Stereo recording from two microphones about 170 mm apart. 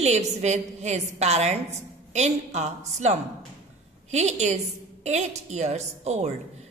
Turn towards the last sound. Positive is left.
turn(degrees=-40)  # may be behind; listen again after turning